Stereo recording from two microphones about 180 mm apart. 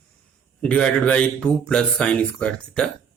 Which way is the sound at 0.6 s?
5° left (ahead or behind).